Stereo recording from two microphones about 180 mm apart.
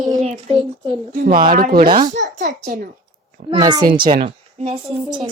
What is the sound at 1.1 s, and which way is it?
A child's voice, 55° right (ahead or behind).